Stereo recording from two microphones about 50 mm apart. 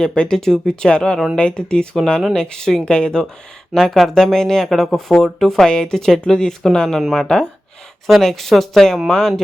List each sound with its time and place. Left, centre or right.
0.0 s speech: centre
3.8 s speech: centre